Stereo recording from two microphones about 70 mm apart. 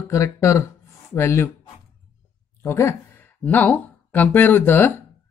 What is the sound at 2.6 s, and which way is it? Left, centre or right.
Speech, left.